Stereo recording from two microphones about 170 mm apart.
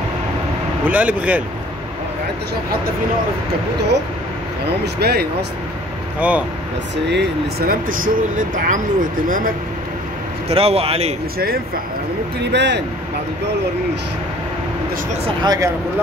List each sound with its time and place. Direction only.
0.8 s speech: 10° right (ahead or behind)
4.8 s speech: 75° right (ahead or behind)
6.1 s speech: 10° right (ahead or behind)
7.1 s speech: 90° right
8.0 s speech: 55° right (ahead or behind)
10.5 s speech: 35° right (ahead or behind)
12.5 s speech: 90° right
15.2 s speech: 25° right (ahead or behind)